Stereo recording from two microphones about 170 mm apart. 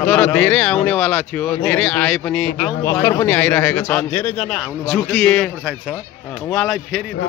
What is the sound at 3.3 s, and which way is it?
A man's voice, 5° left (ahead or behind).